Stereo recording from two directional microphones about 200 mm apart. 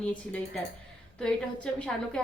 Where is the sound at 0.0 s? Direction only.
5° left (ahead or behind).